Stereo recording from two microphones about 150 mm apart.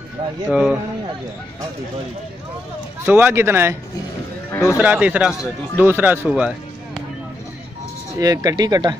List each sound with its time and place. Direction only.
0.5 s speech: 5° right (ahead or behind)
3.1 s speech: 15° right (ahead or behind)
4.5 s a sound: 20° left (ahead or behind)
4.7 s speech: 10° right (ahead or behind)
6.2 s music: 5° right (ahead or behind)
8.2 s speech: 25° right (ahead or behind)